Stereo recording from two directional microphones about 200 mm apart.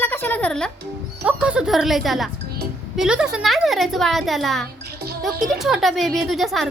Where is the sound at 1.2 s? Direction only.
5° right (ahead or behind).